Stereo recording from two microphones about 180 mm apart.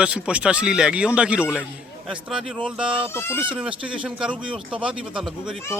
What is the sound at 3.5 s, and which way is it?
Speech, 5° right (ahead or behind).